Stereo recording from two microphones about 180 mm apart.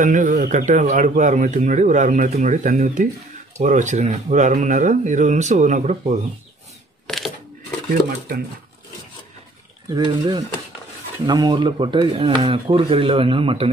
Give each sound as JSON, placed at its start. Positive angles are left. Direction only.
{"t": 0.0, "sound": "speech", "side_deg": -45}
{"t": 7.1, "sound": "crushing", "side_deg": 0}
{"t": 9.9, "sound": "speech", "side_deg": -25}